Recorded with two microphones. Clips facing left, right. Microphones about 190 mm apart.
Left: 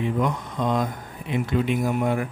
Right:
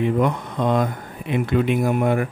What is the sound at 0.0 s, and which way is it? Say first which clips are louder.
A man's voice: right 4 dB; 60° right (ahead or behind).